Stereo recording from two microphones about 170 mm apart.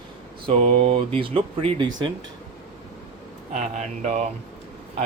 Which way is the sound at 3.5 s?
45° right (ahead or behind).